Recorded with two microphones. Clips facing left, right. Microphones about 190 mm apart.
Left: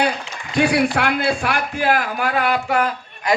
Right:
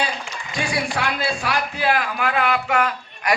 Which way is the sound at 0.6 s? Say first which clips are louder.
Left 7 dB; 60° left (ahead or behind).